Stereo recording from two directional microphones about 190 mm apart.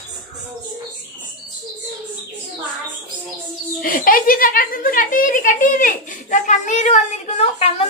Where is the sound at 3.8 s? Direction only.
50° left (ahead or behind).